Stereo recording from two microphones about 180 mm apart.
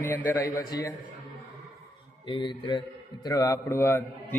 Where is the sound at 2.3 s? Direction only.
25° left (ahead or behind).